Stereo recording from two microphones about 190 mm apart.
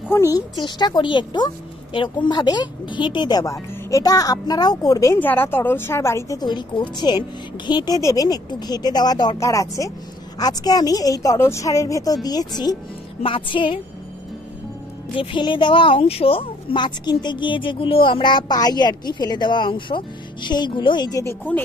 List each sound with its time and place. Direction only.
0.1 s speech: 15° left (ahead or behind)
15.1 s speech: 25° left (ahead or behind)